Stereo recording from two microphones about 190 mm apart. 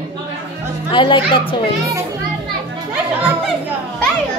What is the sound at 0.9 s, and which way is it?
Speech, 25° left (ahead or behind).